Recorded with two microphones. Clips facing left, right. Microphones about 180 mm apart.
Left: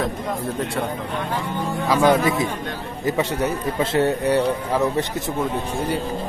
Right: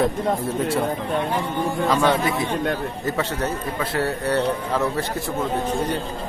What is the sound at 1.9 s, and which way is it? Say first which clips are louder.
A man's voice: left 4 dB; 20° left (ahead or behind).